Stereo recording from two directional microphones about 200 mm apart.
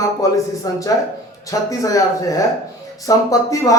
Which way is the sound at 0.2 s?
15° left (ahead or behind).